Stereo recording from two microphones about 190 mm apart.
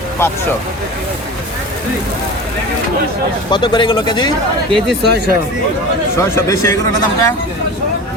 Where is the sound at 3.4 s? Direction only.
25° left (ahead or behind).